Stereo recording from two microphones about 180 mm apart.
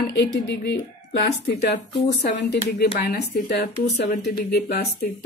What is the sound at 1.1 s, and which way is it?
A woman's voice, 65° left (ahead or behind).